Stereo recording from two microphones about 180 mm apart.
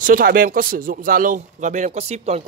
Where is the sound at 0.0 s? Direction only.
50° right (ahead or behind).